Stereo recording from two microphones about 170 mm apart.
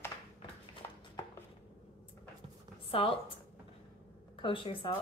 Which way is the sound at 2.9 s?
35° left (ahead or behind).